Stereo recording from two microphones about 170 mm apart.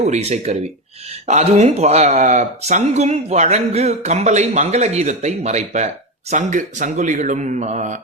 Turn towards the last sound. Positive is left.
turn(degrees=-45)  # may be behind; listen again after turning